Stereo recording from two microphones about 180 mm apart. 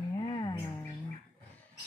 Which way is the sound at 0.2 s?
25° left (ahead or behind).